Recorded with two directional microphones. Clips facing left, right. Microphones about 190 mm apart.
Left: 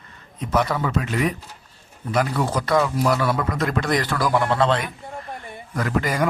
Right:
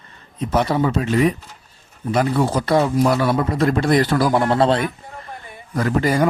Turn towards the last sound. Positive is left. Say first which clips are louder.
# right 5 dB
turn(degrees=-30)  # may be behind; listen again after turning